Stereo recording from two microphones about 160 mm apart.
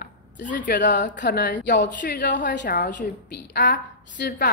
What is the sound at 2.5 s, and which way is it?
A woman's voice, 70° left (ahead or behind).